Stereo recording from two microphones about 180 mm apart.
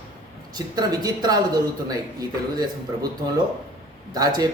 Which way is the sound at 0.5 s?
20° right (ahead or behind).